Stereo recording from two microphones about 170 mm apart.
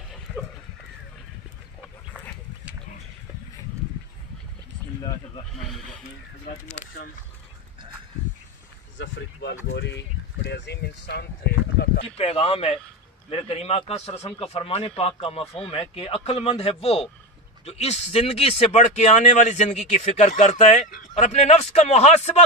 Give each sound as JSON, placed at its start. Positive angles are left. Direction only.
{"t": 2.1, "sound": "a sound", "side_deg": -10}
{"t": 5.0, "sound": "sheep", "side_deg": 25}
{"t": 8.9, "sound": "speech", "side_deg": 90}
{"t": 12.0, "sound": "speech", "side_deg": 35}